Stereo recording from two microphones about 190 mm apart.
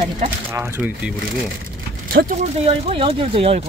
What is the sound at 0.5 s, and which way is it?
Speech, 15° right (ahead or behind).